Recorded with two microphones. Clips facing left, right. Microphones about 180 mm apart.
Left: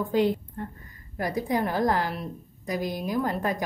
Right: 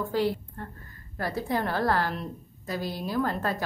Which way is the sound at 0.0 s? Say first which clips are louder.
Left 3 dB; 20° left (ahead or behind).